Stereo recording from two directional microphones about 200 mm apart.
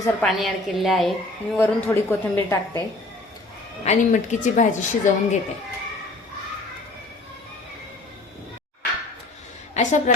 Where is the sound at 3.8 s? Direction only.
40° left (ahead or behind).